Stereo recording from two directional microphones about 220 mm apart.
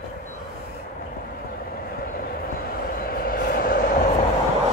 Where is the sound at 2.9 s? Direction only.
40° left (ahead or behind).